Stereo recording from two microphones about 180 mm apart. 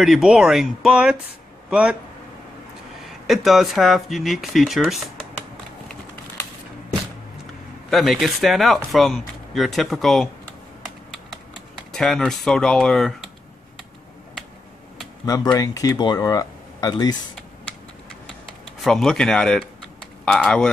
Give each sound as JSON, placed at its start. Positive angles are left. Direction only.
{"t": 0.0, "sound": "speech", "side_deg": 0}
{"t": 3.3, "sound": "speech", "side_deg": 0}
{"t": 7.9, "sound": "speech", "side_deg": 0}
{"t": 11.9, "sound": "speech", "side_deg": 5}
{"t": 15.2, "sound": "speech", "side_deg": 20}
{"t": 18.9, "sound": "speech", "side_deg": 5}